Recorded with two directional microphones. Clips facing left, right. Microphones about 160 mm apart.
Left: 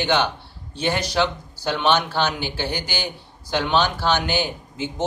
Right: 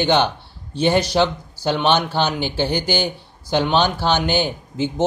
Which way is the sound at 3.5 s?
25° right (ahead or behind).